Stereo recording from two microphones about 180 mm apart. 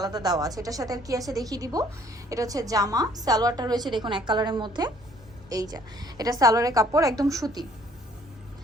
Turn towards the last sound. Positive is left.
turn(degrees=-20)  # may be behind; listen again after turning